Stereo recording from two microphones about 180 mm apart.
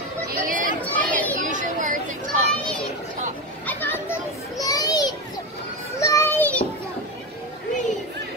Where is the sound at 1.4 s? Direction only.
45° right (ahead or behind).